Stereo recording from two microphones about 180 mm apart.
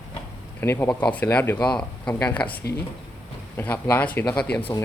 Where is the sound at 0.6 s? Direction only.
10° left (ahead or behind).